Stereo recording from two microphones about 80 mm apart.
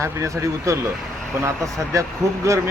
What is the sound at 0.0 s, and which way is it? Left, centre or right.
Speech, right.